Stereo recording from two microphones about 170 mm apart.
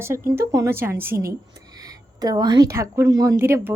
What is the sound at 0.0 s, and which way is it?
A woman's voice, 15° right (ahead or behind).